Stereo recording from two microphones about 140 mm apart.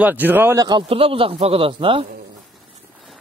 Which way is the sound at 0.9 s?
40° right (ahead or behind).